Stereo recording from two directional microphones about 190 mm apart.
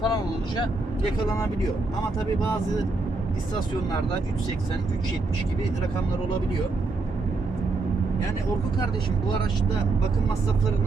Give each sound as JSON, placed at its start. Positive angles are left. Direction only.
{"t": 0.0, "sound": "vehicle", "side_deg": 20}